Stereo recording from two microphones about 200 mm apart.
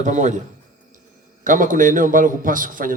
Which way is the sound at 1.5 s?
40° right (ahead or behind).